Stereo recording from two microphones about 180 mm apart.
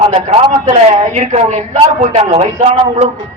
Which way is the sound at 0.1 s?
35° right (ahead or behind).